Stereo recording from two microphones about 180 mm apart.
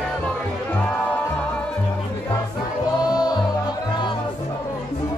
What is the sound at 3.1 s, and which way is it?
Music, 20° left (ahead or behind).